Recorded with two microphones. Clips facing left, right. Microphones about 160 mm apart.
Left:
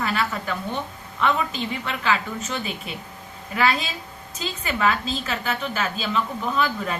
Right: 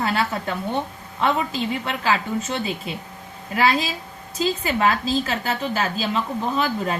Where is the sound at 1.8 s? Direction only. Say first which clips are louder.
Right 2 dB; 30° right (ahead or behind).